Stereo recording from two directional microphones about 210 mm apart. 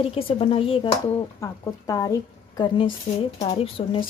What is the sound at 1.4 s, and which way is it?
A woman's voice, 15° left (ahead or behind).